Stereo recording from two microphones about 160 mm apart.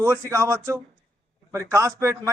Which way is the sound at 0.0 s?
20° right (ahead or behind).